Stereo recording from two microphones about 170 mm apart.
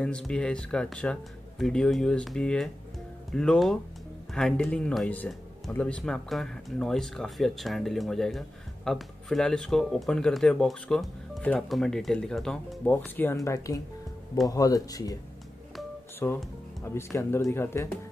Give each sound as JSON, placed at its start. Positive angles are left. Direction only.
{"t": 0.0, "sound": "speech", "side_deg": 5}
{"t": 16.2, "sound": "speech", "side_deg": 10}